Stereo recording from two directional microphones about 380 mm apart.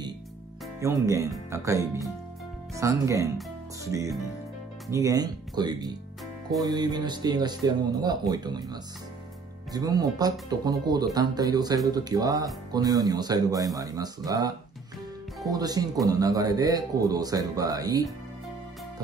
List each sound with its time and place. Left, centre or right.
0.7 s speech: centre